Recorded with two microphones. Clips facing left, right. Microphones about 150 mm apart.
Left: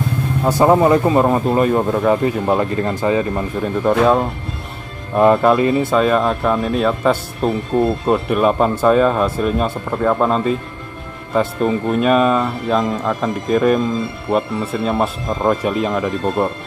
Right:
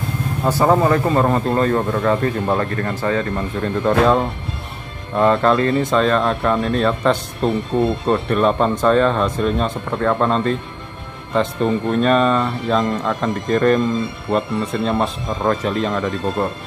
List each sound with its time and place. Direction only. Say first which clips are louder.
0.5 s speech: left 3 dB; 15° left (ahead or behind)
5.1 s speech: left 3 dB; 15° left (ahead or behind)